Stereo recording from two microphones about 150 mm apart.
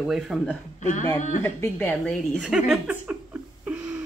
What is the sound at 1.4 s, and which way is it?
Speech, 10° left (ahead or behind).